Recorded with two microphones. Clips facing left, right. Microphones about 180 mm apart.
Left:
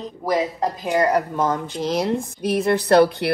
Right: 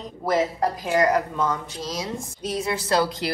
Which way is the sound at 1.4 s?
55° left (ahead or behind).